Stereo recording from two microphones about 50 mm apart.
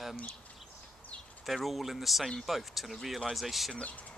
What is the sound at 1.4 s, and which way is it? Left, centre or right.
Speech, centre.